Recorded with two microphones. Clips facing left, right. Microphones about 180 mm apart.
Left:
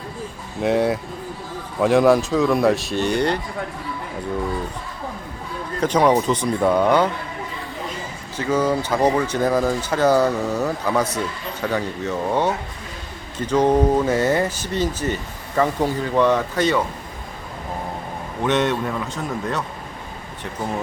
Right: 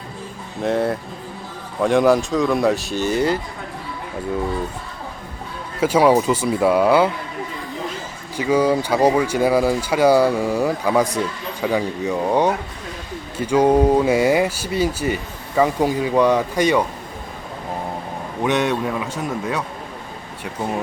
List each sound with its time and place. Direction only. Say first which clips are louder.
0.6 s speech: left 1 dB; centre (ahead or behind)
5.8 s speech: right 2 dB; 10° right (ahead or behind)
8.4 s speech: right 3 dB; 10° right (ahead or behind)
18.4 s speech: even; 10° right (ahead or behind)